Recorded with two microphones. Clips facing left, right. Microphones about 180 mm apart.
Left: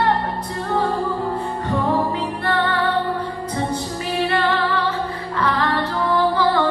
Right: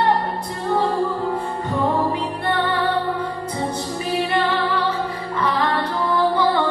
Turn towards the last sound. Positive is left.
turn(degrees=-15)  # may be behind; listen again after turning